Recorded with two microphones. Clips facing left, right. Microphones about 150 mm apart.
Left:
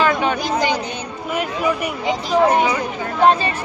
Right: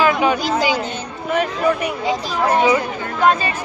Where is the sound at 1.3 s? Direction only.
5° left (ahead or behind).